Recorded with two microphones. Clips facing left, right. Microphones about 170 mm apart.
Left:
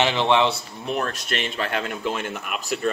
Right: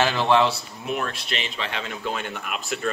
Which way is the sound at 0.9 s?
40° left (ahead or behind).